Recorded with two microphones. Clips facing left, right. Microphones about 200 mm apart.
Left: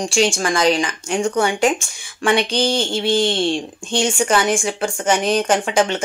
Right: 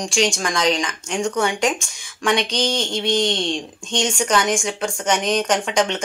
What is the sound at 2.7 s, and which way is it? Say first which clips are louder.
Speech: left 3 dB; 30° left (ahead or behind).